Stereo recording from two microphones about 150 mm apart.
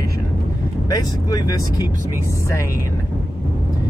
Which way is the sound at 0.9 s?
25° left (ahead or behind).